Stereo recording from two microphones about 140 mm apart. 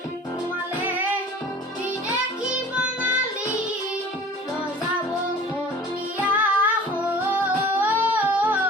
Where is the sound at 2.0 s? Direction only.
10° right (ahead or behind).